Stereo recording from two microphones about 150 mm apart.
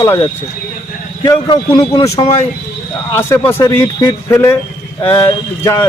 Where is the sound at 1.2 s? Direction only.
30° left (ahead or behind).